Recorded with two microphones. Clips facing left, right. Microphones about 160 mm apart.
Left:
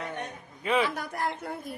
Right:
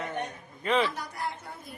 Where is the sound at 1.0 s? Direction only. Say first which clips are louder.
Left 4 dB; 60° left (ahead or behind).